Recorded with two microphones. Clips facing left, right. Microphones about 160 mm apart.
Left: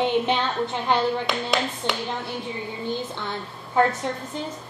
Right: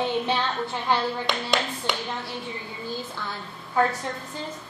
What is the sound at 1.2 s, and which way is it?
Speech, centre (ahead or behind).